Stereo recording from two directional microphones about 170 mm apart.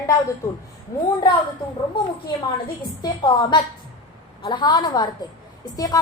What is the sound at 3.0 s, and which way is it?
A woman's voice, 25° left (ahead or behind).